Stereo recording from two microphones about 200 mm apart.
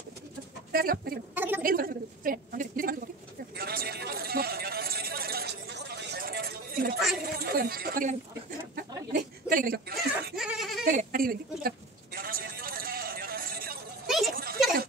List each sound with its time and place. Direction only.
0.7 s speech: 45° right (ahead or behind)
1.3 s a woman's voice: 10° right (ahead or behind)
1.6 s speech: 45° right (ahead or behind)
3.5 s a sound: 50° right (ahead or behind)
7.3 s speech: 50° right (ahead or behind)
8.7 s chuckle: 45° right (ahead or behind)
10.3 s goat: 5° right (ahead or behind)
10.9 s a sound: 45° right (ahead or behind)